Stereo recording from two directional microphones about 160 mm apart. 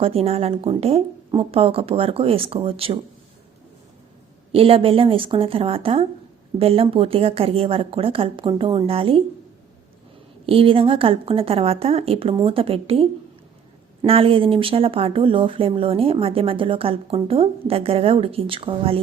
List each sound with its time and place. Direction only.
0.0 s speech: 40° right (ahead or behind)
4.5 s speech: 35° right (ahead or behind)
10.4 s speech: 35° right (ahead or behind)